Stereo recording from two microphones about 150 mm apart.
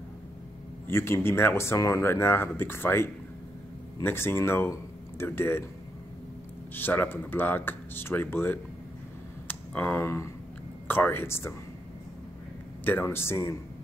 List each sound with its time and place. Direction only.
0.8 s speech: 15° left (ahead or behind)
6.7 s speech: 10° left (ahead or behind)
12.8 s speech: 15° left (ahead or behind)